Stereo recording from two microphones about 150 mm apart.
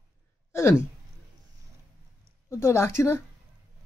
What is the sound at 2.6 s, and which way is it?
Speech, 20° left (ahead or behind).